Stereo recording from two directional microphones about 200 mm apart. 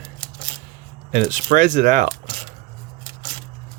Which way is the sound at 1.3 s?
40° right (ahead or behind).